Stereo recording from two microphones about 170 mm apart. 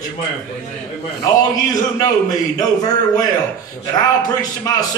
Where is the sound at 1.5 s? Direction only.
20° left (ahead or behind).